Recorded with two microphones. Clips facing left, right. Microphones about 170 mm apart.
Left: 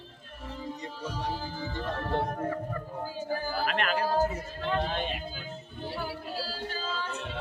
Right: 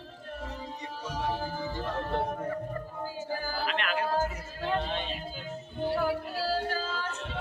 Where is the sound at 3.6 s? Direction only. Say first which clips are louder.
Left 2 dB; 45° left (ahead or behind).